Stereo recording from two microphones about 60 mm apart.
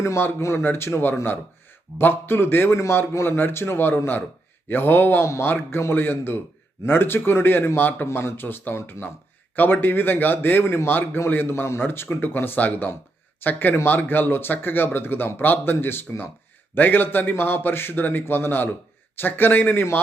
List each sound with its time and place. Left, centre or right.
0.2 s a man's voice: left
5.2 s a man's voice: left
5.5 s speech: left